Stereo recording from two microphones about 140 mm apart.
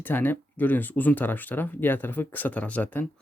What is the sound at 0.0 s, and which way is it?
Speech, 15° left (ahead or behind).